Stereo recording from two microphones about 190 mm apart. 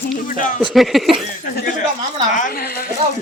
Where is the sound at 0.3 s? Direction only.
45° left (ahead or behind).